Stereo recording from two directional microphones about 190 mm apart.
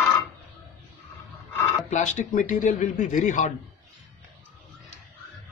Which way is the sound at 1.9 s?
40° left (ahead or behind).